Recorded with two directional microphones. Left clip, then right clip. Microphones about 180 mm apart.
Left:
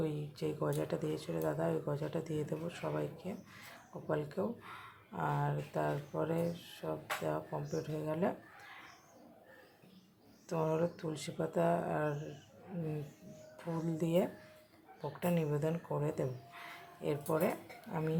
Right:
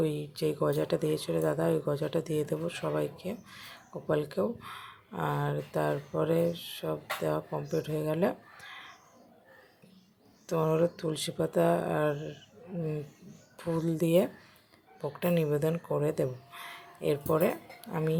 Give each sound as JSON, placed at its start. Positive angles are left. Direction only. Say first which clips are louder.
{"t": 0.0, "sound": "speech", "louder": "right 8 dB", "side_deg": -20}
{"t": 10.4, "sound": "speech", "louder": "right 7 dB", "side_deg": -15}
{"t": 13.6, "sound": "speech", "louder": "right 8 dB", "side_deg": -15}